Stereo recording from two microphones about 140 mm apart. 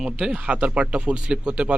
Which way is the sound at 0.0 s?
5° right (ahead or behind).